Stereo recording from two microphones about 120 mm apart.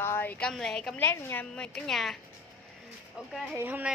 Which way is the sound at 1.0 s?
20° left (ahead or behind).